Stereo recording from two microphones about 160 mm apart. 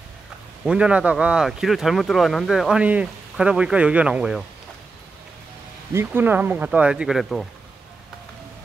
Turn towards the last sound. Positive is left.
turn(degrees=0)  # may be behind; listen again after turning